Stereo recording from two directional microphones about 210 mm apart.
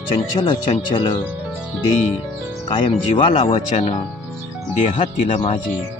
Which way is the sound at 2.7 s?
25° left (ahead or behind).